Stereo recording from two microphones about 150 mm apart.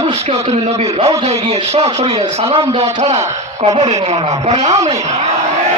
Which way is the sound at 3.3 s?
50° right (ahead or behind).